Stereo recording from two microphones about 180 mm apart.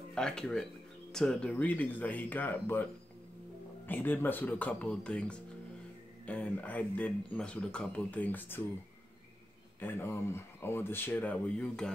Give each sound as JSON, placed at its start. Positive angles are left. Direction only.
{"t": 0.1, "sound": "speech", "side_deg": 5}
{"t": 9.8, "sound": "speech", "side_deg": 10}